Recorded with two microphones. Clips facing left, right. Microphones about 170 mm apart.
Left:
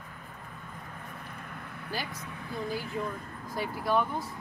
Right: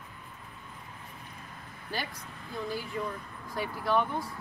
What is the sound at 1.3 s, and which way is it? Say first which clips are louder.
Vehicle: left 4 dB; 60° left (ahead or behind).